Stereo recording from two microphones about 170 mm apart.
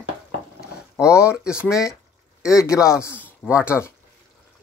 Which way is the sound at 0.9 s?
15° left (ahead or behind).